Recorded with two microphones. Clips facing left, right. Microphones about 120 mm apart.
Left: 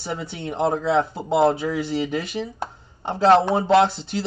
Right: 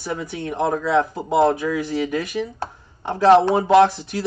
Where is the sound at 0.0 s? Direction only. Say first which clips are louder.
Right 2 dB; 30° left (ahead or behind).